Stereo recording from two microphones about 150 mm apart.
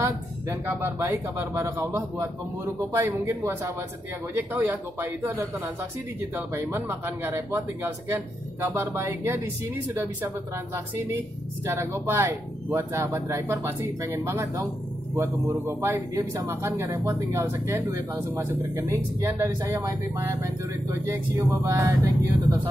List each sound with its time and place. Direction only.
0.0 s speech: 15° right (ahead or behind)
11.6 s a man's voice: 20° right (ahead or behind)
21.6 s a man's voice: 20° right (ahead or behind)